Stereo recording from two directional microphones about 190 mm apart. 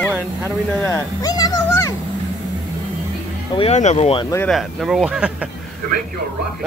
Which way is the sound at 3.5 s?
35° left (ahead or behind).